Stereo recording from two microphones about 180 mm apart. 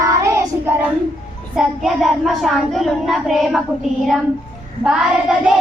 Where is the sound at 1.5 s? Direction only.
Centre (ahead or behind).